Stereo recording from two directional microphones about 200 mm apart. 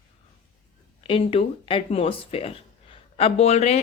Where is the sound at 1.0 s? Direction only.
30° left (ahead or behind).